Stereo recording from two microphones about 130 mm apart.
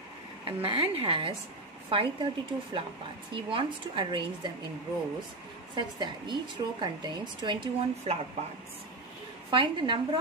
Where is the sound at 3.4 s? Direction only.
40° right (ahead or behind).